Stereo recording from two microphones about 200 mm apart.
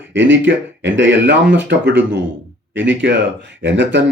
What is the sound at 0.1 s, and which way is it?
Speech, 65° right (ahead or behind).